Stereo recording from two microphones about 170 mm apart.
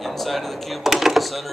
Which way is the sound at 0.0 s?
Centre (ahead or behind).